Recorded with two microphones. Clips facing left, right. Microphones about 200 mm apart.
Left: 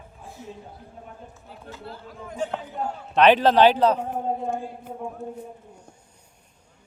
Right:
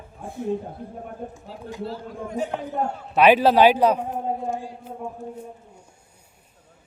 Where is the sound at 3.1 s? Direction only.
10° right (ahead or behind).